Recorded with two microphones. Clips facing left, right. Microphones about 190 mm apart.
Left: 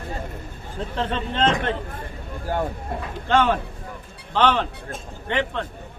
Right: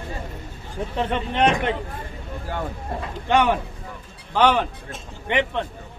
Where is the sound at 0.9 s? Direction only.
15° right (ahead or behind).